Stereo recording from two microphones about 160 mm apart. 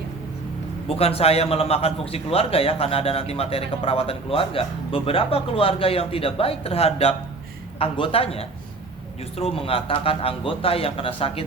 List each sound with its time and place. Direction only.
0.9 s speech: 40° left (ahead or behind)